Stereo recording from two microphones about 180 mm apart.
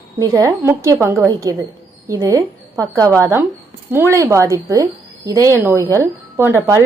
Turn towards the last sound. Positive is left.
turn(degrees=-15)  # may be behind; listen again after turning